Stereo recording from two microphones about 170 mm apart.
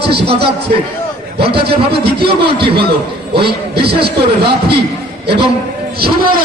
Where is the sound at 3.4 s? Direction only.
70° right (ahead or behind).